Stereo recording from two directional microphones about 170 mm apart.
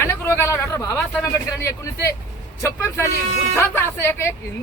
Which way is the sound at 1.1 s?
15° left (ahead or behind).